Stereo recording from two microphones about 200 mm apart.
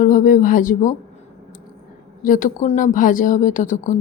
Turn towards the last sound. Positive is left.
turn(degrees=40)  # may be behind; listen again after turning